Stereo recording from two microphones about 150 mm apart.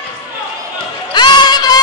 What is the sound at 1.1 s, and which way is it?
Music, 30° left (ahead or behind).